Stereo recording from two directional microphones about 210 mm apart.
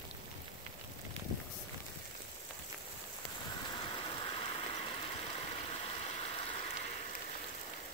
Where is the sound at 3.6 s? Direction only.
20° left (ahead or behind).